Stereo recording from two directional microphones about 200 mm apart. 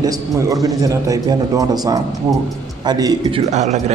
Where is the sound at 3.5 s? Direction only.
35° right (ahead or behind).